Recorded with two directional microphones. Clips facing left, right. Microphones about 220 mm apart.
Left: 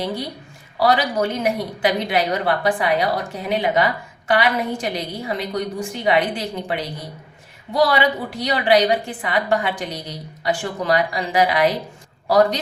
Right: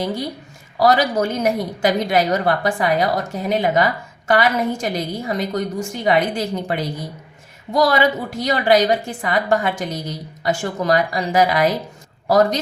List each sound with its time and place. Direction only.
0.8 s a woman's voice: 45° right (ahead or behind)